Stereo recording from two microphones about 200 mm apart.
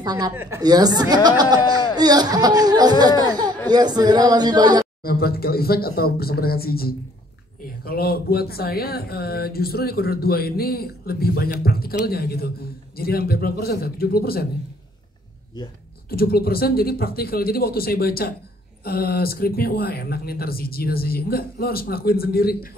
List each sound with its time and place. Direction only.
0.0 s speech: 20° right (ahead or behind)
5.0 s speech: 50° left (ahead or behind)
16.1 s speech: 50° left (ahead or behind)